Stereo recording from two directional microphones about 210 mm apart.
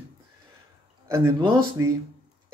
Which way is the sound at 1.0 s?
10° right (ahead or behind).